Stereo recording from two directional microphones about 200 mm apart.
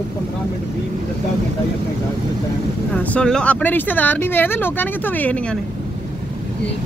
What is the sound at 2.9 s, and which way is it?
Speech, 5° left (ahead or behind).